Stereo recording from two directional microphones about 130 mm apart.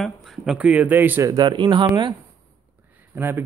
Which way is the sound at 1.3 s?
35° right (ahead or behind).